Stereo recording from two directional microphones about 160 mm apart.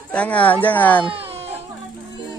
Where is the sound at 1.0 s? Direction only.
35° right (ahead or behind).